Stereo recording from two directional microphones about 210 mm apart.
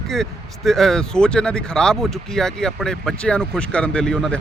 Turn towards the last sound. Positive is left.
turn(degrees=5)  # may be behind; listen again after turning